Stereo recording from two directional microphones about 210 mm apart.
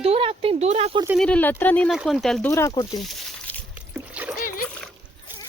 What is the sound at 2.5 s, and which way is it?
Speech, 15° left (ahead or behind).